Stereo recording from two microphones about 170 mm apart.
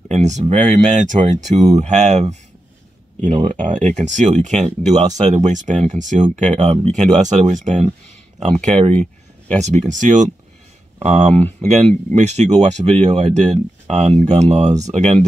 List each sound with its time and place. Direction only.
0.1 s speech: 45° right (ahead or behind)
9.6 s speech: 45° right (ahead or behind)